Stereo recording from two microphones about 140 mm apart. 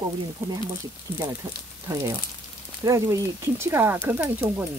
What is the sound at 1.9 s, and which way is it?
Speech, 20° right (ahead or behind).